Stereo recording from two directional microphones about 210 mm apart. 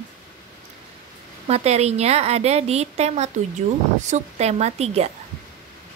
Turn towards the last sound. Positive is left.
turn(degrees=-30)  # may be behind; listen again after turning